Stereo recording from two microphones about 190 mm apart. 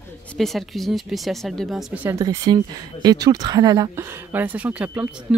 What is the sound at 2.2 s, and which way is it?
Speech, 20° right (ahead or behind).